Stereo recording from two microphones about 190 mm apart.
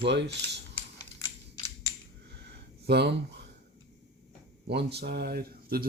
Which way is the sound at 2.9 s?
60° right (ahead or behind).